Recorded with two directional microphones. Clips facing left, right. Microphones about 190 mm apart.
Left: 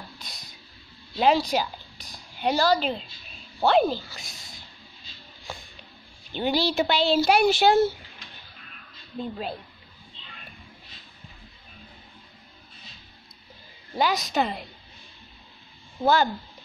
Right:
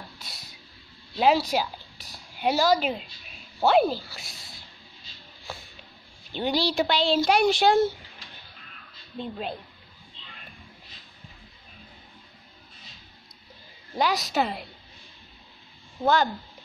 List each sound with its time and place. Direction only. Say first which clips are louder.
0.2 s a sound: left 1 dB; 5° right (ahead or behind)
1.1 s speech: even; 5° right (ahead or behind)
6.3 s speech: left 1 dB; centre (ahead or behind)
9.2 s speech: left 1 dB; 5° left (ahead or behind)
13.9 s speech: left 1 dB; centre (ahead or behind)